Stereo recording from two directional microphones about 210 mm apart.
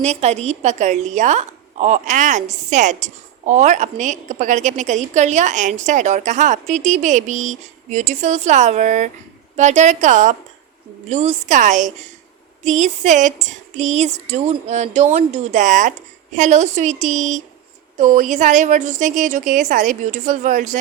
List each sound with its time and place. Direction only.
0.0 s a woman's voice: 30° right (ahead or behind)